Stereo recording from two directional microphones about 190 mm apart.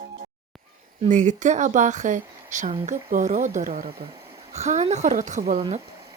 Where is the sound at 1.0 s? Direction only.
40° right (ahead or behind).